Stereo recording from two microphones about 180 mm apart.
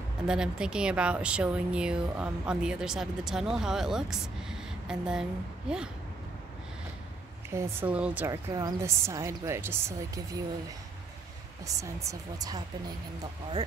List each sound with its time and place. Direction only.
0.3 s speech: 5° right (ahead or behind)
7.5 s a woman's voice: 10° right (ahead or behind)
8.3 s a woman's voice: 20° right (ahead or behind)
11.6 s a woman's voice: 15° right (ahead or behind)